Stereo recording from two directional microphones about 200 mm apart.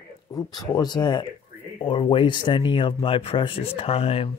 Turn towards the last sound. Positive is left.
turn(degrees=30)  # may be behind; listen again after turning